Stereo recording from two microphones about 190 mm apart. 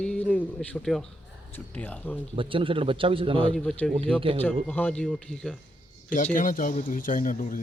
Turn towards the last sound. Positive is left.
turn(degrees=45)  # may be behind; listen again after turning